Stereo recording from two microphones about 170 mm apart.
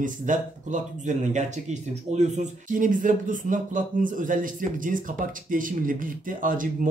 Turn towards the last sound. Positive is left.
turn(degrees=-55)  # may be behind; listen again after turning